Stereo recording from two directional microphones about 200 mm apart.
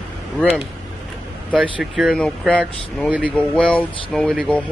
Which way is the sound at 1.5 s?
5° left (ahead or behind).